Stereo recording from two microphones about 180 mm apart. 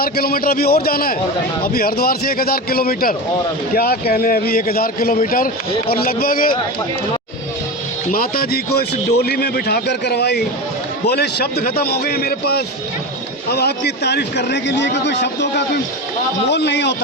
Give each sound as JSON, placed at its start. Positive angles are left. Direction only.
{"t": 0.0, "sound": "a man's voice", "side_deg": 55}
{"t": 8.1, "sound": "a man's voice", "side_deg": 55}